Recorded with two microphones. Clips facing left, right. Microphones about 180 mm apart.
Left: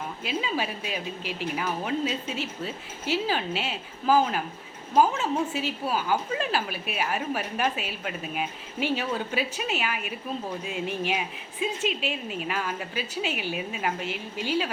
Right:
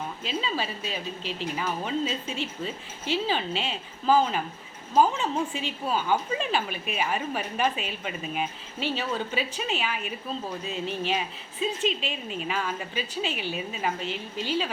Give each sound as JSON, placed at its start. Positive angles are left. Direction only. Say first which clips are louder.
{"t": 0.2, "sound": "a woman's voice", "louder": "left 2 dB", "side_deg": 10}